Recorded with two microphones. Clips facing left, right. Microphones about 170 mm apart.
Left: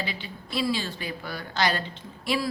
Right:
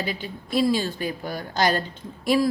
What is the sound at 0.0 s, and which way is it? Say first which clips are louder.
A woman's voice: right 5 dB; 45° right (ahead or behind).